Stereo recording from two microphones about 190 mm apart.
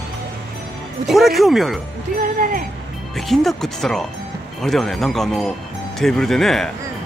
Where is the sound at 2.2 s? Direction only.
45° right (ahead or behind).